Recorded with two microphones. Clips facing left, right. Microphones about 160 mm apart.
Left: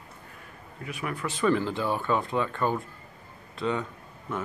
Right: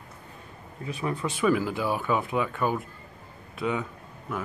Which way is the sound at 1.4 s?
10° right (ahead or behind).